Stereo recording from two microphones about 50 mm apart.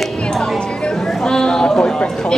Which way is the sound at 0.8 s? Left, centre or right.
Centre.